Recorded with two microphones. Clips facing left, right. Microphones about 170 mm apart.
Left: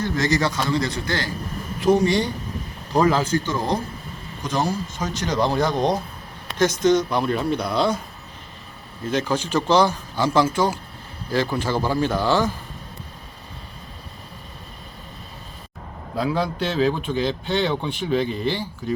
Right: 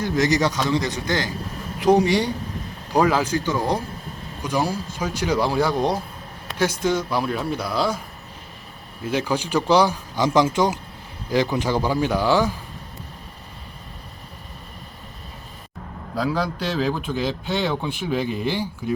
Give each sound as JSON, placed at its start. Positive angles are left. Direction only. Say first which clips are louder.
{"t": 0.0, "sound": "a man's voice", "louder": "right 2 dB", "side_deg": -15}
{"t": 9.0, "sound": "a man's voice", "louder": "even", "side_deg": -10}
{"t": 16.1, "sound": "a man's voice", "louder": "left 1 dB", "side_deg": 0}